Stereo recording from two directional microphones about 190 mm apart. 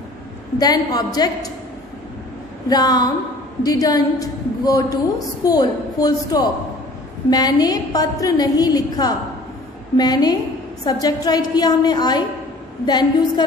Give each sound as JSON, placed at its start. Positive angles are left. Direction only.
{"t": 0.6, "sound": "a woman's voice", "side_deg": 20}
{"t": 2.7, "sound": "a woman's voice", "side_deg": 20}